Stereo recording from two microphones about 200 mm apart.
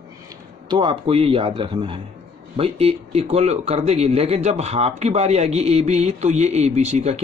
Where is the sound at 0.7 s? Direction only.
25° right (ahead or behind).